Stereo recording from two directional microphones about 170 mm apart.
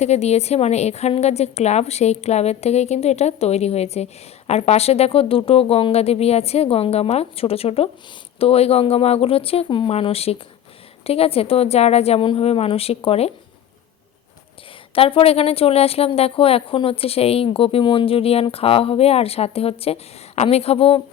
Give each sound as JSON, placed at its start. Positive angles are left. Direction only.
{"t": 0.0, "sound": "a woman's voice", "side_deg": 40}
{"t": 14.9, "sound": "a woman's voice", "side_deg": 35}